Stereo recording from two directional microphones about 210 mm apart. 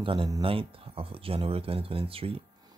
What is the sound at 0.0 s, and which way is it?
Speech, 25° right (ahead or behind).